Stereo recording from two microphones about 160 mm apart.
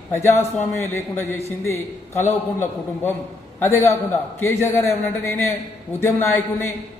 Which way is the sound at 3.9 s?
15° left (ahead or behind).